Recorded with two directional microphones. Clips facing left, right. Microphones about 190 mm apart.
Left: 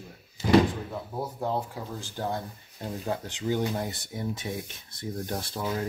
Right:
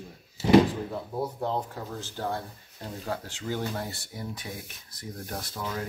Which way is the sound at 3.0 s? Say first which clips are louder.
Left 3 dB; 20° left (ahead or behind).